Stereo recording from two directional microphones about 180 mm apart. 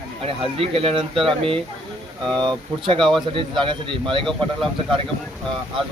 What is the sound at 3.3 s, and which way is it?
Speech, 25° right (ahead or behind).